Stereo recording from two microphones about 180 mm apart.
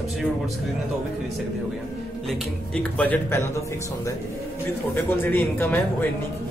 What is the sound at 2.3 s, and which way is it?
A man's voice, 5° left (ahead or behind).